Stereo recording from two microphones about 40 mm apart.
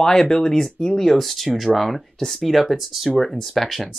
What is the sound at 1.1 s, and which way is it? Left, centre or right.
Speech, centre.